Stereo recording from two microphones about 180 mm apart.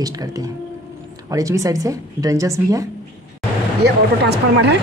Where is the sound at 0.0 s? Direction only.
20° right (ahead or behind).